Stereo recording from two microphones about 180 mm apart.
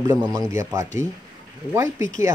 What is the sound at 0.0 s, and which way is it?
Speech, 20° right (ahead or behind).